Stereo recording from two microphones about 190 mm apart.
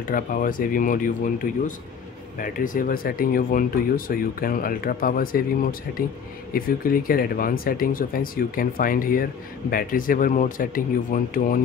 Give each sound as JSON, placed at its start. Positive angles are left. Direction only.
{"t": 0.0, "sound": "speech", "side_deg": 45}